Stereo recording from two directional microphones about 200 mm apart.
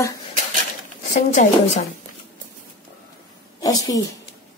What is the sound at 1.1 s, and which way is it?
Speech, 40° left (ahead or behind).